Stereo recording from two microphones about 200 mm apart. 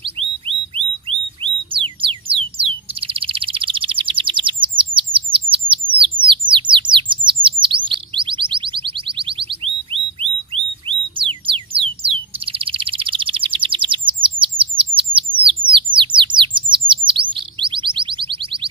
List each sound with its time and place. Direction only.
1.4 s bird: 25° right (ahead or behind)
7.2 s chirp: 25° right (ahead or behind)
8.1 s alarm: 25° right (ahead or behind)
10.5 s a sound: 25° right (ahead or behind)
15.4 s chirp: 25° right (ahead or behind)